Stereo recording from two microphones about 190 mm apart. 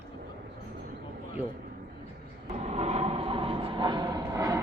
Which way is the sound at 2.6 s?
35° right (ahead or behind).